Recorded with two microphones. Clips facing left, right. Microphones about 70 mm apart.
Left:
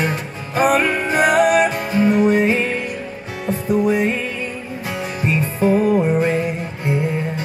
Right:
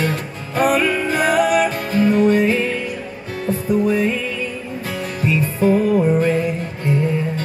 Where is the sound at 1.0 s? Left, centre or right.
Centre.